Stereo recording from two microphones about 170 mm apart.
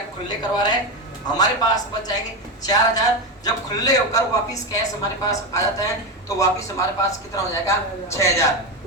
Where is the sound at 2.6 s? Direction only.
20° left (ahead or behind).